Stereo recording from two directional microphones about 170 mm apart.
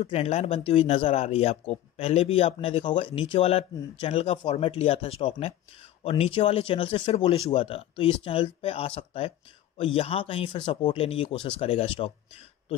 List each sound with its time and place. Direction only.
0.0 s speech: 35° left (ahead or behind)